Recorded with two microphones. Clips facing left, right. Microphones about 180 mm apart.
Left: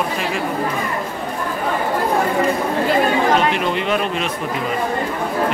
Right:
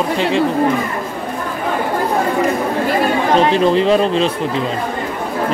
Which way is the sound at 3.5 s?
30° right (ahead or behind).